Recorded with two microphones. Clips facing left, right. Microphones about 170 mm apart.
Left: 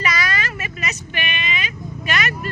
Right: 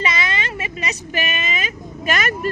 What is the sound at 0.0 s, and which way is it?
Vehicle, 25° right (ahead or behind).